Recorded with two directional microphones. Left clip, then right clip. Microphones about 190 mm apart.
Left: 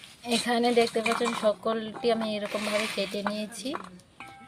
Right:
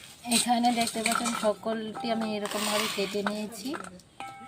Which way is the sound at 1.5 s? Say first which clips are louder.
Left 2 dB; 40° left (ahead or behind).